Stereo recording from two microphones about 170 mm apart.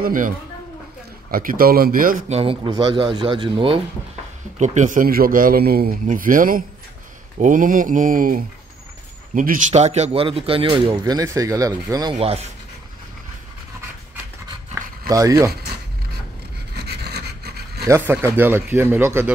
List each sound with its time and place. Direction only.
0.0 s mantra: 50° right (ahead or behind)
1.3 s a man's voice: 55° right (ahead or behind)
2.2 s speech: 35° right (ahead or behind)
4.6 s a man's voice: 45° right (ahead or behind)
7.3 s mantra: 50° right (ahead or behind)
9.3 s speech: 50° right (ahead or behind); by 12.2 s 20° right (ahead or behind)
12.2 s speech: 35° right (ahead or behind)
15.0 s speech: 20° right (ahead or behind)
16.7 s pant: 75° right (ahead or behind)
17.8 s speech: 15° right (ahead or behind)